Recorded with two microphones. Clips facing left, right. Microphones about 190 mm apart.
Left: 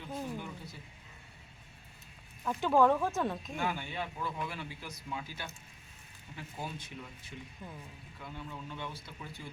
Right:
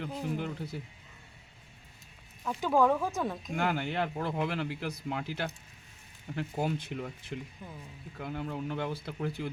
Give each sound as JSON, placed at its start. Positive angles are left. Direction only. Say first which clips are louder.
{"t": 0.3, "sound": "speech", "louder": "right 7 dB", "side_deg": -80}
{"t": 2.4, "sound": "speech", "louder": "even", "side_deg": 0}
{"t": 3.5, "sound": "speech", "louder": "right 5 dB", "side_deg": -70}
{"t": 8.2, "sound": "speech", "louder": "right 9 dB", "side_deg": -75}
{"t": 8.9, "sound": "speech", "louder": "right 11 dB", "side_deg": -60}